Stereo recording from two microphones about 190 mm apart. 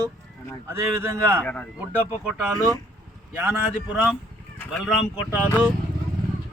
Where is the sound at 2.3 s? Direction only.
5° right (ahead or behind).